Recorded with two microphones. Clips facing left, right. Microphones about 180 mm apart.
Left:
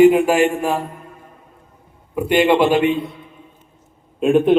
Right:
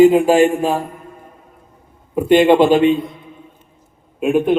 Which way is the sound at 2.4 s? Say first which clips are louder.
Right 2 dB; 20° right (ahead or behind).